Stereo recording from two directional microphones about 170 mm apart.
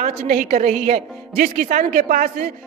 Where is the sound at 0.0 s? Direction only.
40° right (ahead or behind).